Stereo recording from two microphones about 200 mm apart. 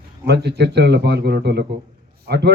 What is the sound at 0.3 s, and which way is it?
A man's voice, 55° right (ahead or behind).